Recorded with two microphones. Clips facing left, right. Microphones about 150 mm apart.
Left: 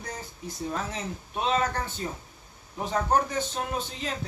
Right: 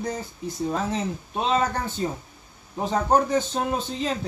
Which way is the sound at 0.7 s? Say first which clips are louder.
Right 6 dB; 30° right (ahead or behind).